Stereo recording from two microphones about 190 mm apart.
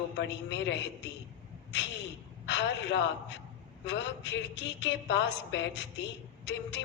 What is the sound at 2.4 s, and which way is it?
Speech, 70° left (ahead or behind).